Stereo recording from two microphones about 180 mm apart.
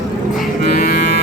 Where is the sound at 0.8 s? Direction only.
60° left (ahead or behind).